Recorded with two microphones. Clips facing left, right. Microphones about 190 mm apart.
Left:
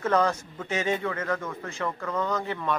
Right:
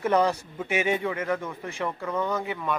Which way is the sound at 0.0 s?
15° right (ahead or behind).